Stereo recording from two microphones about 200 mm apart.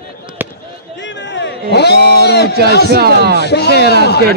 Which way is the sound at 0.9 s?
60° left (ahead or behind).